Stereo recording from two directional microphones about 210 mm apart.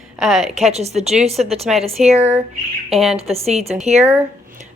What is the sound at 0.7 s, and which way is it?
A woman's voice, 30° right (ahead or behind).